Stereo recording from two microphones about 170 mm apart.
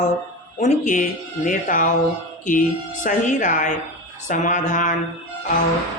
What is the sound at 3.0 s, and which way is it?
Speech, 50° left (ahead or behind).